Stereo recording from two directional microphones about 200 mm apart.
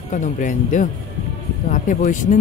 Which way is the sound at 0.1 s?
40° left (ahead or behind).